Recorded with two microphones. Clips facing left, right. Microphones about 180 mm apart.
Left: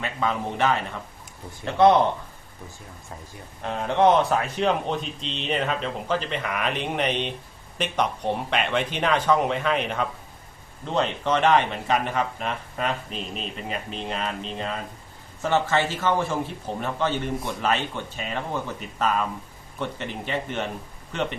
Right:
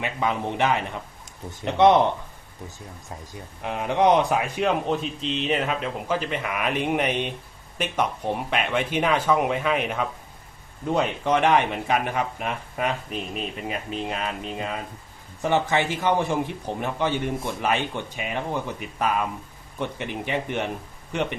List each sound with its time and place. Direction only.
0.0 s speech: 15° right (ahead or behind)
3.6 s speech: 15° right (ahead or behind)